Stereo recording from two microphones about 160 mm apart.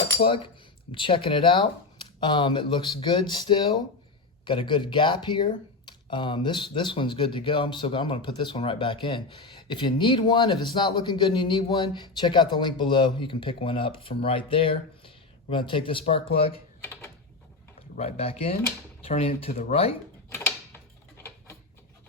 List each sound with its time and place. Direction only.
0.3 s speech: 30° left (ahead or behind)
17.7 s speech: 40° left (ahead or behind)